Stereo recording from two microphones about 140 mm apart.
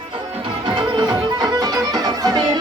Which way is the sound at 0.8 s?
30° right (ahead or behind).